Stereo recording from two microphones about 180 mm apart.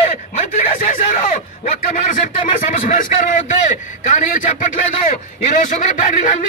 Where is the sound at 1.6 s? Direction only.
45° left (ahead or behind).